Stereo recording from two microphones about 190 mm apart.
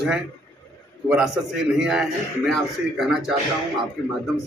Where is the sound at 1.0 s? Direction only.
5° right (ahead or behind).